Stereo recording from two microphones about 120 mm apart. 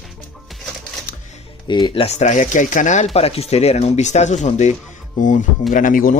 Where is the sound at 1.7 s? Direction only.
40° left (ahead or behind).